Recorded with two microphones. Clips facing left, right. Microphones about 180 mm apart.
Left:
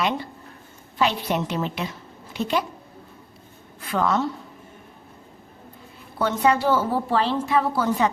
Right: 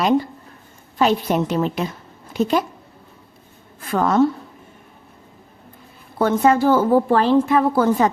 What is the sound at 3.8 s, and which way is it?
Speech, 45° right (ahead or behind).